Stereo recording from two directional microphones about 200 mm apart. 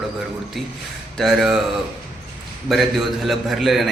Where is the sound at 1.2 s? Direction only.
Centre (ahead or behind).